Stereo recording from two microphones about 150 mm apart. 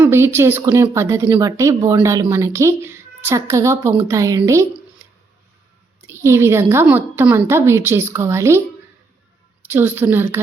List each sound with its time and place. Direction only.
0.0 s a woman's voice: 15° right (ahead or behind)
6.2 s a woman's voice: 15° right (ahead or behind)
9.6 s a woman's voice: 15° right (ahead or behind)